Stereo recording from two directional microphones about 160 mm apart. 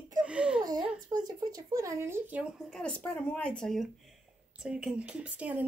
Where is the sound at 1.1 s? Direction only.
20° right (ahead or behind).